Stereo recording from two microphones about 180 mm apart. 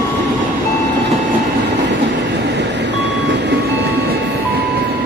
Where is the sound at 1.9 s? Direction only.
75° right (ahead or behind).